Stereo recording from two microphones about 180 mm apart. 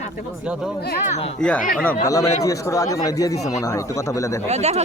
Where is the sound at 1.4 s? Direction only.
5° left (ahead or behind).